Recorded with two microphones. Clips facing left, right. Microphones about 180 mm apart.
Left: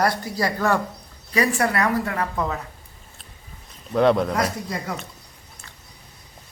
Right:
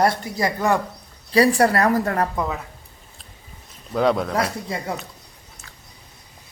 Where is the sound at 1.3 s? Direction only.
35° right (ahead or behind).